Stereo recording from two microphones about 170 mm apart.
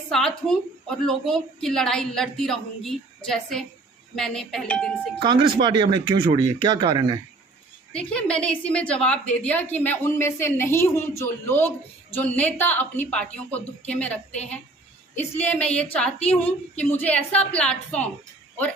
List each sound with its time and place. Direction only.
0.1 s a woman's voice: centre (ahead or behind)
5.2 s speech: 25° right (ahead or behind)
7.9 s a woman's voice: 5° left (ahead or behind)